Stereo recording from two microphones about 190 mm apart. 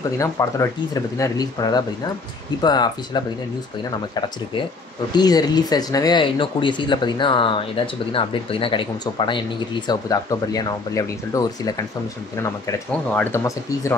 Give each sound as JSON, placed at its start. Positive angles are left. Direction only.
{"t": 0.2, "sound": "speech", "side_deg": 15}
{"t": 5.1, "sound": "speech", "side_deg": 20}